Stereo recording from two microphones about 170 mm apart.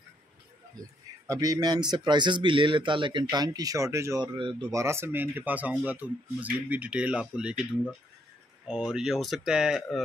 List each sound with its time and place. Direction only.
1.2 s speech: 20° right (ahead or behind)
4.4 s speech: 30° right (ahead or behind)
4.6 s speech: 15° right (ahead or behind)
8.9 s speech: centre (ahead or behind)